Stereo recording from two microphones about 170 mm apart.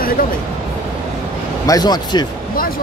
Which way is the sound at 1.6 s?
20° left (ahead or behind).